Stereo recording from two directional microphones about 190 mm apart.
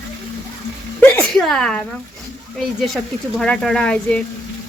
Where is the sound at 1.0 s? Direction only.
5° left (ahead or behind).